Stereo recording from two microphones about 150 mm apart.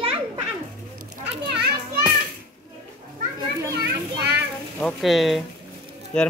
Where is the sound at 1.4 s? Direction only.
90° right.